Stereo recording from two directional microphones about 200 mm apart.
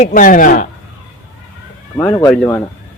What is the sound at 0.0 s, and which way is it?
Speech, 40° left (ahead or behind).